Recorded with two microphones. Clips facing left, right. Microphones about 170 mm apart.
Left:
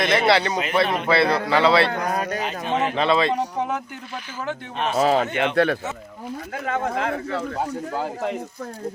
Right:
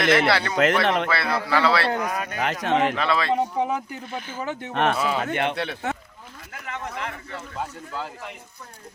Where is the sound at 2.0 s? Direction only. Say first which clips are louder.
Left 3 dB; 35° left (ahead or behind).